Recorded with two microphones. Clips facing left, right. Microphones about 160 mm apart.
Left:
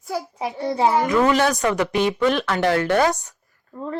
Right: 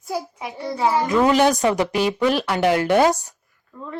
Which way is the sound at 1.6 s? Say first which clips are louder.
Right 2 dB; 20° right (ahead or behind).